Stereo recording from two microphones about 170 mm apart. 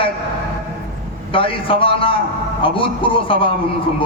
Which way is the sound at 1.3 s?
30° left (ahead or behind).